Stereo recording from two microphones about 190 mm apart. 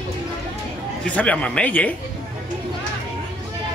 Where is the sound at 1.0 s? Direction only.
5° left (ahead or behind).